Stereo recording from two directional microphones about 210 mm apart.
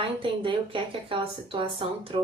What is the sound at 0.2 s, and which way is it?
Speech, 25° right (ahead or behind).